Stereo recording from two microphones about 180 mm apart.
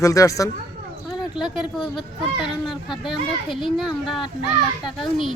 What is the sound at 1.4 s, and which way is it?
A child's voice, centre (ahead or behind).